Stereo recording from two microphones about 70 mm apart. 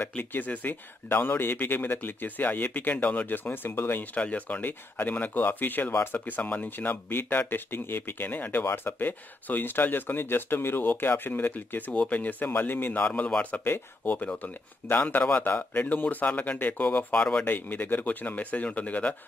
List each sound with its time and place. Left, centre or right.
0.2 s speech: left
4.1 s speech: left
17.1 s speech: centre
17.5 s speech: left